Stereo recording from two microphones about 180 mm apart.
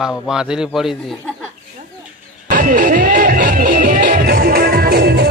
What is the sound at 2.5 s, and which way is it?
Music, 50° right (ahead or behind).